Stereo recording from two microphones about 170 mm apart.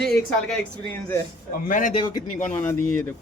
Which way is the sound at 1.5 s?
50° left (ahead or behind).